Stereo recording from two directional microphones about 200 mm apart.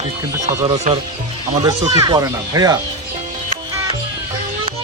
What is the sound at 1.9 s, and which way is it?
Speech, 15° right (ahead or behind).